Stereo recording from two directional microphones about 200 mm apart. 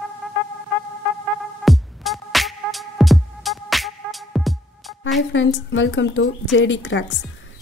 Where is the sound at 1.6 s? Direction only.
Centre (ahead or behind).